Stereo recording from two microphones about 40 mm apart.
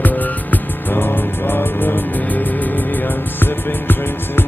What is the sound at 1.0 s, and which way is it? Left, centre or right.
Music, left.